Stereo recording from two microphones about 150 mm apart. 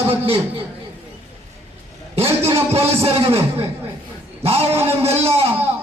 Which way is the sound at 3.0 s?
40° right (ahead or behind).